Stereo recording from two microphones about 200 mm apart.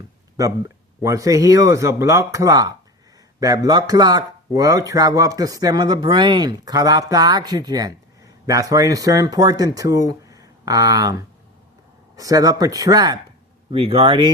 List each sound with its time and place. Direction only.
1.0 s speech: 15° right (ahead or behind)